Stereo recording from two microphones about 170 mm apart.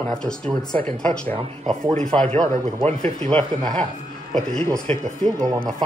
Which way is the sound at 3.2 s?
5° left (ahead or behind).